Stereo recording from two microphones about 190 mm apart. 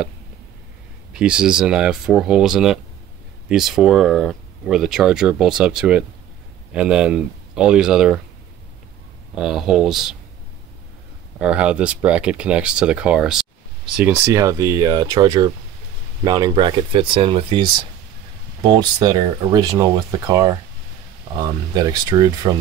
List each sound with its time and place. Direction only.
1.1 s speech: 5° right (ahead or behind)
9.3 s speech: 5° right (ahead or behind)
11.3 s speech: 5° right (ahead or behind); by 17.6 s 30° right (ahead or behind)
18.7 s speech: 20° right (ahead or behind)